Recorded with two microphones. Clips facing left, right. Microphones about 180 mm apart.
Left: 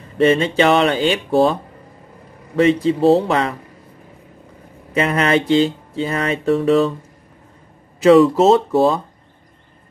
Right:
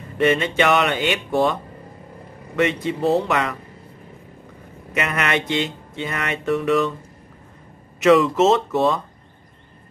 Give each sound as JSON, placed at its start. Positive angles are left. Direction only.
{"t": 0.2, "sound": "speech", "side_deg": 30}
{"t": 4.9, "sound": "speech", "side_deg": 30}
{"t": 8.0, "sound": "speech", "side_deg": 30}